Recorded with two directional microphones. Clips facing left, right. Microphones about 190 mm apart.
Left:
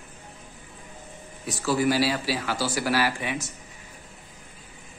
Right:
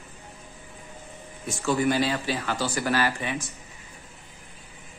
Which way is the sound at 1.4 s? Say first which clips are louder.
Even; 5° left (ahead or behind).